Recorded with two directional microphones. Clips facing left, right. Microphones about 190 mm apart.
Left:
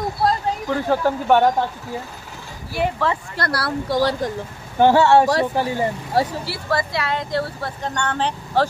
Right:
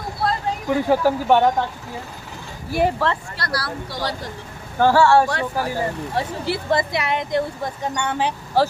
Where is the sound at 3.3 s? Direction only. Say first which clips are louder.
Left 4 dB; 55° left (ahead or behind).